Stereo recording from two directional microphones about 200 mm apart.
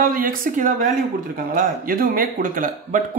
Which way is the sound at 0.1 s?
45° right (ahead or behind).